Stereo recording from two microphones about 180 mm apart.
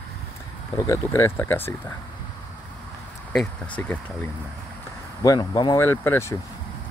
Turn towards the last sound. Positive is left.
turn(degrees=15)  # may be behind; listen again after turning